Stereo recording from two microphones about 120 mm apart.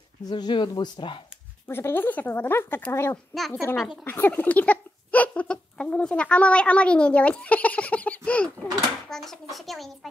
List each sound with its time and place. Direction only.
0.3 s speech: 40° left (ahead or behind)
1.7 s speech: 20° left (ahead or behind)
3.3 s a child's voice: centre (ahead or behind)
4.0 s a child's voice: 15° left (ahead or behind); by 9.9 s centre (ahead or behind)